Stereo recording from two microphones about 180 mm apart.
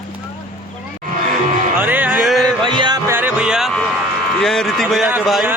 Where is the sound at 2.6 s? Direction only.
25° right (ahead or behind).